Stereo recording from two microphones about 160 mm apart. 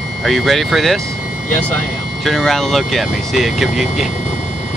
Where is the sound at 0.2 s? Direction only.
Centre (ahead or behind).